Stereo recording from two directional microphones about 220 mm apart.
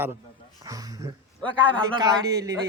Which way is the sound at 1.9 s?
15° right (ahead or behind).